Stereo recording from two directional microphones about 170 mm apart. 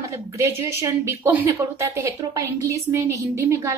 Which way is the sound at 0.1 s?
15° right (ahead or behind).